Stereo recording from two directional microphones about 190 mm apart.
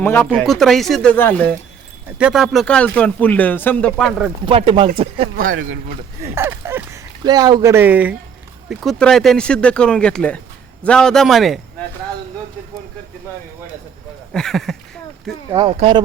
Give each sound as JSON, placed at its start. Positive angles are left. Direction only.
{"t": 0.0, "sound": "speech", "side_deg": 10}
{"t": 2.1, "sound": "speech", "side_deg": -5}
{"t": 4.4, "sound": "speech", "side_deg": -30}
{"t": 5.4, "sound": "speech", "side_deg": -45}
{"t": 6.2, "sound": "speech", "side_deg": -15}
{"t": 14.3, "sound": "speech", "side_deg": 0}
{"t": 15.4, "sound": "speech", "side_deg": -20}